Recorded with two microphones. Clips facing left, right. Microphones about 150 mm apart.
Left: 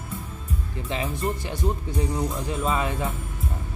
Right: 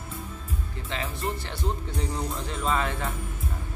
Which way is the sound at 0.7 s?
15° left (ahead or behind).